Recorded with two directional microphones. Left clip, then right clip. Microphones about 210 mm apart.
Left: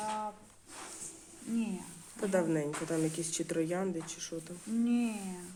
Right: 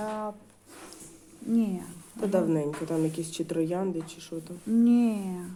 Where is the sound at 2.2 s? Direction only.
Centre (ahead or behind).